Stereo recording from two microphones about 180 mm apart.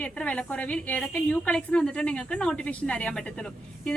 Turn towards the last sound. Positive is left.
turn(degrees=5)  # may be behind; listen again after turning